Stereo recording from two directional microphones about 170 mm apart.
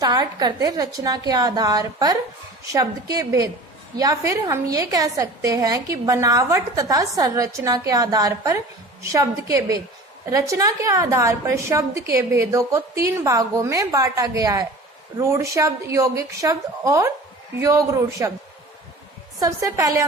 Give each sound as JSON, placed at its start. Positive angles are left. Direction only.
{"t": 0.0, "sound": "a woman's voice", "side_deg": -20}
{"t": 19.4, "sound": "a woman's voice", "side_deg": -20}